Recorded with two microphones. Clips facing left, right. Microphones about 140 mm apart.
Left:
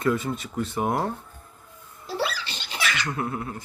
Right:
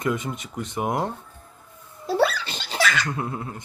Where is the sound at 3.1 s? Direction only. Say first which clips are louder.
Left 1 dB; 25° right (ahead or behind).